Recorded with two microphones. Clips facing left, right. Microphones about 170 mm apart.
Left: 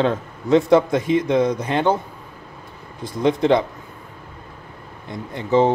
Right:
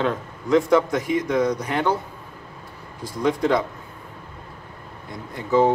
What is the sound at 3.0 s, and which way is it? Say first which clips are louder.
Speech: left 3 dB; 25° left (ahead or behind).